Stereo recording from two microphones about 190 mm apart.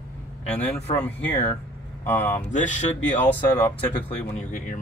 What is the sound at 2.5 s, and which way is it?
Speech, 40° left (ahead or behind).